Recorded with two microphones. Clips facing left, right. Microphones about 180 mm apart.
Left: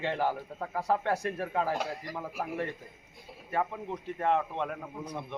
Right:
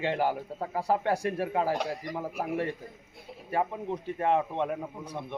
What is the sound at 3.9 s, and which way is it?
Speech, 20° right (ahead or behind).